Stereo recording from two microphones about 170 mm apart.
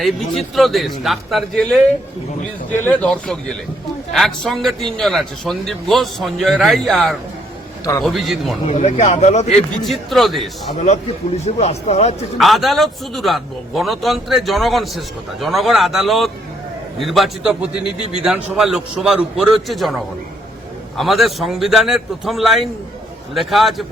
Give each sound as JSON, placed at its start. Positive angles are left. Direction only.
{"t": 0.0, "sound": "a man's voice", "side_deg": 0}
{"t": 2.8, "sound": "a man's voice", "side_deg": 10}
{"t": 8.6, "sound": "speech", "side_deg": 40}
{"t": 9.6, "sound": "a man's voice", "side_deg": 0}
{"t": 11.4, "sound": "speech", "side_deg": 40}
{"t": 12.4, "sound": "a man's voice", "side_deg": 0}